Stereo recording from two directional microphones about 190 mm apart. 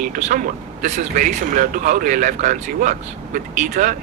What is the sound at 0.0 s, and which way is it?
A man's voice, 45° right (ahead or behind).